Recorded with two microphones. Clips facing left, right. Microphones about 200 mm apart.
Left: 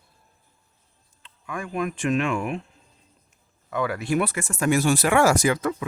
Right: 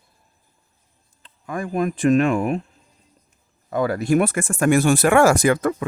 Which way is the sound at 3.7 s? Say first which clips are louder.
Right 6 dB; 40° right (ahead or behind).